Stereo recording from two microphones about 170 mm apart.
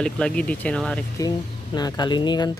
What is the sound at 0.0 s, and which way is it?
Speech, 5° left (ahead or behind).